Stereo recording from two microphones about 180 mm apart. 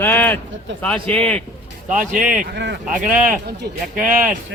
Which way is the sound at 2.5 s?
65° right (ahead or behind).